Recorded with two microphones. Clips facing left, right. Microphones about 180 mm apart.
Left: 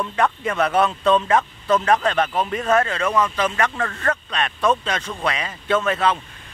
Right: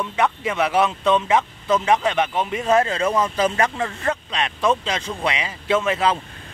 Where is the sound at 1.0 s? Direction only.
20° right (ahead or behind).